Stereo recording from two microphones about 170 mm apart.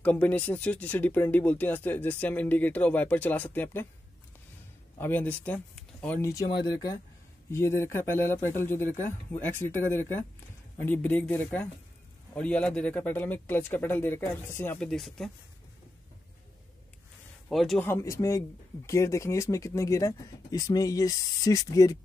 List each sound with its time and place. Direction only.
0.0 s speech: 10° left (ahead or behind)
4.9 s speech: 10° left (ahead or behind)
14.9 s speech: centre (ahead or behind)
17.5 s speech: centre (ahead or behind)
17.8 s speech: 15° left (ahead or behind)